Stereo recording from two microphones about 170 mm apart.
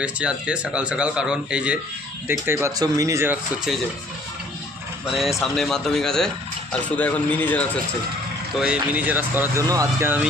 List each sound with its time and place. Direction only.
0.0 s speech: 5° right (ahead or behind)
5.1 s a man's voice: centre (ahead or behind)
8.6 s speech: 5° right (ahead or behind)